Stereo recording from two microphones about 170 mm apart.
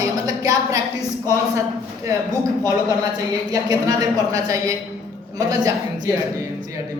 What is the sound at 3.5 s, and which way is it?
A woman's voice, 20° right (ahead or behind).